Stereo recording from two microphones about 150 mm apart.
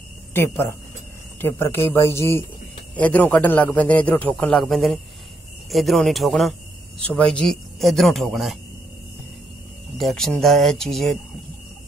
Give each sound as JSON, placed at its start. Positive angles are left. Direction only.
{"t": 0.3, "sound": "a man's voice", "side_deg": 15}
{"t": 9.9, "sound": "a man's voice", "side_deg": 0}